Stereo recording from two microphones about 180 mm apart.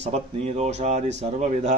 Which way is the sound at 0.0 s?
40° right (ahead or behind).